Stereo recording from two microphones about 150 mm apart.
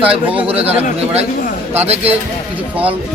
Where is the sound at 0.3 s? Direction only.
40° right (ahead or behind).